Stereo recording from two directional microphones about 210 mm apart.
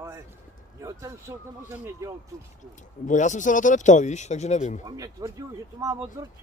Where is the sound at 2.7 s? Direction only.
35° left (ahead or behind).